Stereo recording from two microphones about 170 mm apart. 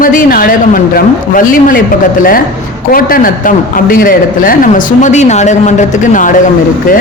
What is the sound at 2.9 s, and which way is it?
A man's voice, 55° left (ahead or behind).